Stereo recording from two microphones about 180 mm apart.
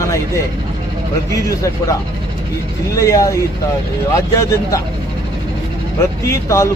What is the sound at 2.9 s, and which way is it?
Speech, 15° left (ahead or behind).